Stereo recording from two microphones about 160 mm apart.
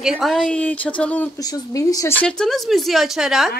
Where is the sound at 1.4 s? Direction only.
25° left (ahead or behind).